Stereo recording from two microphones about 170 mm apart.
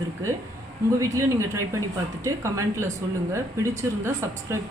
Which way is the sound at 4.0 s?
15° right (ahead or behind).